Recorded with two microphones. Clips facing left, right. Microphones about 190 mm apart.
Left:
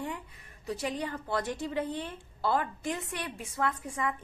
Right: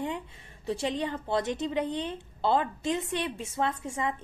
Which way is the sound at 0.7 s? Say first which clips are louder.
Right 4 dB; 25° right (ahead or behind).